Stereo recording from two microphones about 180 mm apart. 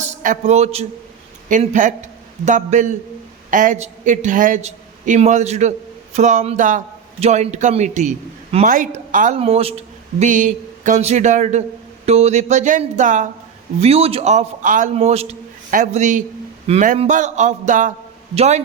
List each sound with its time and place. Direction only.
0.0 s a man's voice: 45° right (ahead or behind)
13.8 s a man's voice: 35° right (ahead or behind)